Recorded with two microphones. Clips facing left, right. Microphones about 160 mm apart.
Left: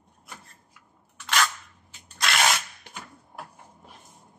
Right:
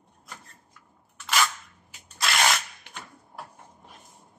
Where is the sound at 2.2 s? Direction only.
Centre (ahead or behind).